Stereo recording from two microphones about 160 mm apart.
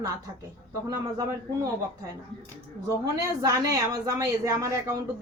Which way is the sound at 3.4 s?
20° right (ahead or behind).